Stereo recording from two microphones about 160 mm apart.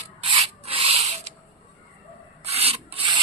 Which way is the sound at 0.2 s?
35° right (ahead or behind).